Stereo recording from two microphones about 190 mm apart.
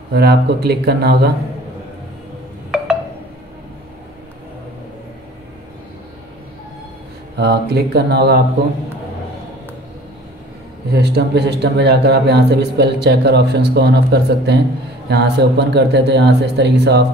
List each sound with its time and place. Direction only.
0.1 s a man's voice: 55° right (ahead or behind)
7.3 s a man's voice: 60° right (ahead or behind)
10.9 s a man's voice: 60° right (ahead or behind)